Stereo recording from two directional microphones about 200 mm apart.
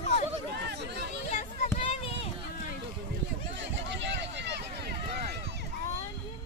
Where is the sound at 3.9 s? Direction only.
60° right (ahead or behind).